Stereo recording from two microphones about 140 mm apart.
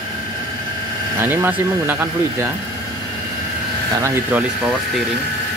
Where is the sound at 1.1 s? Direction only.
15° right (ahead or behind).